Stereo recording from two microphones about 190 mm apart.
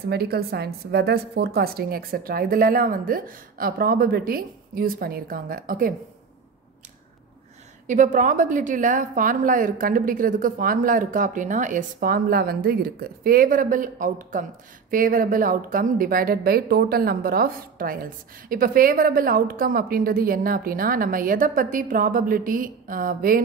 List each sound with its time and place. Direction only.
0.1 s a woman's voice: 55° right (ahead or behind)
7.8 s a woman's voice: 40° right (ahead or behind)